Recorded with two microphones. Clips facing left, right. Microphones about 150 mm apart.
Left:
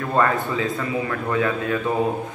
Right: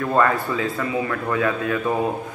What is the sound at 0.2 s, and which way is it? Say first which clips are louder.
A man's voice: left 1 dB; 25° left (ahead or behind).